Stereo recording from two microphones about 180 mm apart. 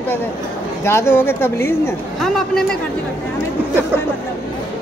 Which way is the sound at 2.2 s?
5° left (ahead or behind).